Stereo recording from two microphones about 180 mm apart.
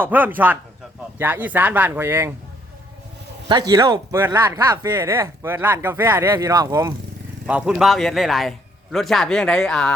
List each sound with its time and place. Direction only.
0.0 s speech: 10° right (ahead or behind)
3.5 s speech: 20° right (ahead or behind)
7.4 s a man's voice: 5° right (ahead or behind)